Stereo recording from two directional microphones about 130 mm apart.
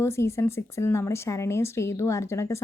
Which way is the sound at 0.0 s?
20° left (ahead or behind).